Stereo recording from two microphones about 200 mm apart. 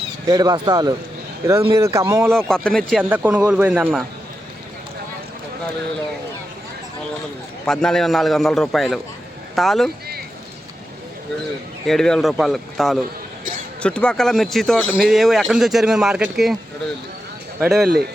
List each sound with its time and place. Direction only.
0.3 s speech: 20° right (ahead or behind)
2.5 s a man's voice: 5° left (ahead or behind)
3.0 s speech: 5° right (ahead or behind)
7.6 s a man's voice: 5° left (ahead or behind)
11.9 s a man's voice: 5° left (ahead or behind)
17.6 s a man's voice: centre (ahead or behind)